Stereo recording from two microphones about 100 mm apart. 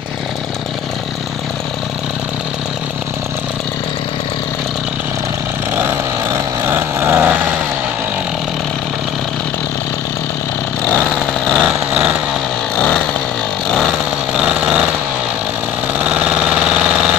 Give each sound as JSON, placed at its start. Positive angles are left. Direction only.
{"t": 6.6, "sound": "a sound", "side_deg": -25}
{"t": 10.9, "sound": "vehicle", "side_deg": 15}
{"t": 11.5, "sound": "vehicle", "side_deg": -10}
{"t": 12.7, "sound": "chainsaw", "side_deg": 10}
{"t": 14.3, "sound": "vehicle", "side_deg": -10}
{"t": 16.0, "sound": "engine", "side_deg": -10}